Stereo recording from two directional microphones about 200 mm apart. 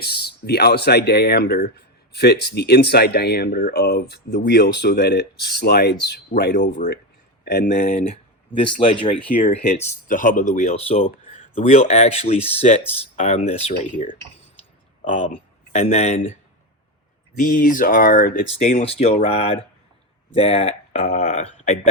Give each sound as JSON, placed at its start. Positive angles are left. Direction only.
{"t": 0.0, "sound": "speech", "side_deg": 50}
{"t": 7.8, "sound": "speech", "side_deg": 30}
{"t": 18.5, "sound": "speech", "side_deg": 30}